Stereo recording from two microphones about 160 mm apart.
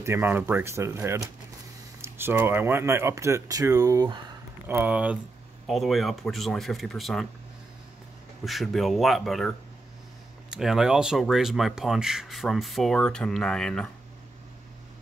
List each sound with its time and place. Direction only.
0.0 s speech: 15° right (ahead or behind)
4.6 s speech: 10° right (ahead or behind)
8.5 s speech: centre (ahead or behind)
10.5 s speech: 5° right (ahead or behind)